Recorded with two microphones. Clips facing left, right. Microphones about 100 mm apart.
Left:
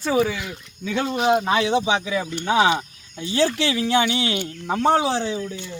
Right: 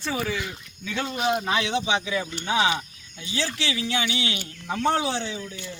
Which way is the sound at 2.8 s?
40° left (ahead or behind).